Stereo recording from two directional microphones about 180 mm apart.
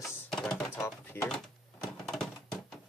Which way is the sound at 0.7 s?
15° left (ahead or behind).